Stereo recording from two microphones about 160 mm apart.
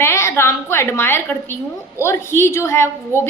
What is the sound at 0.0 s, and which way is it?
A woman's voice, 15° left (ahead or behind).